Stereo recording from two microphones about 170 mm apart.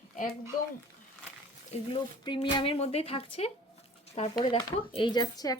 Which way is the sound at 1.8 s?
30° left (ahead or behind).